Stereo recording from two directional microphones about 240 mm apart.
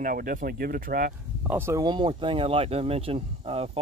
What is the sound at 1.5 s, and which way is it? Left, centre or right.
Speech, centre.